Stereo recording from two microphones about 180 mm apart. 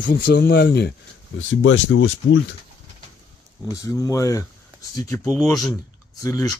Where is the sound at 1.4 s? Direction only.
90° left.